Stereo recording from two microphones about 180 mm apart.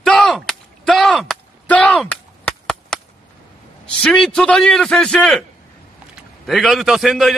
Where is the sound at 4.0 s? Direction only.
5° left (ahead or behind).